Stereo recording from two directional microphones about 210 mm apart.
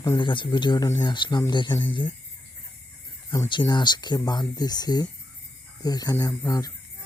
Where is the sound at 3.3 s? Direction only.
20° left (ahead or behind).